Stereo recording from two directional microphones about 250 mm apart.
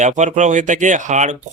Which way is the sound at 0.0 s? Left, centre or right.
Right.